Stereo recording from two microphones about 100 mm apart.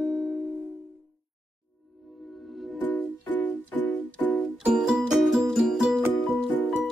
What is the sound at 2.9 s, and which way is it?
Music, 15° left (ahead or behind).